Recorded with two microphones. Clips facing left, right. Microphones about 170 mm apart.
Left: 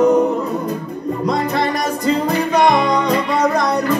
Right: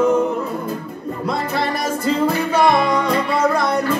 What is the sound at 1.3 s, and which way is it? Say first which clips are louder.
Music: left 2 dB; 5° right (ahead or behind).